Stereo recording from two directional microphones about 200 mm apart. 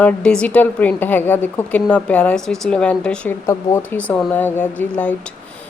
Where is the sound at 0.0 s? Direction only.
5° left (ahead or behind).